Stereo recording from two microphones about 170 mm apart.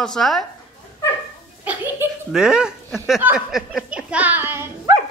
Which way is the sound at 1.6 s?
10° right (ahead or behind).